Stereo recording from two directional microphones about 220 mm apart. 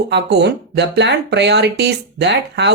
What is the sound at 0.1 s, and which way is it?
Speech, 50° right (ahead or behind).